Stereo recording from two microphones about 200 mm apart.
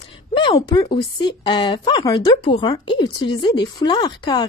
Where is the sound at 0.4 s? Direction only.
20° left (ahead or behind).